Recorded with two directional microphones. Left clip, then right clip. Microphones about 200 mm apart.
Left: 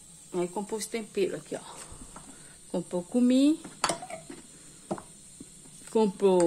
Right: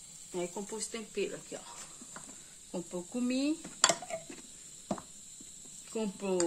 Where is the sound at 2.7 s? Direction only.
25° left (ahead or behind).